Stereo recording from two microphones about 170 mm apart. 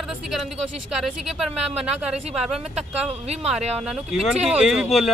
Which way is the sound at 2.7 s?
40° right (ahead or behind).